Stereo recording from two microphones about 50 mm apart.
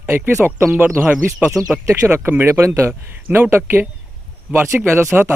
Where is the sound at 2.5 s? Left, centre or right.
Right.